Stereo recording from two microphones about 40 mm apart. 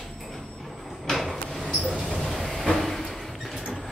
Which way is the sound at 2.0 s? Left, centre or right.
Centre.